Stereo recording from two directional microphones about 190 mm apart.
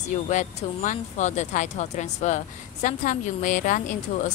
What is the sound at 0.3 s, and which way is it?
Speech, 40° left (ahead or behind).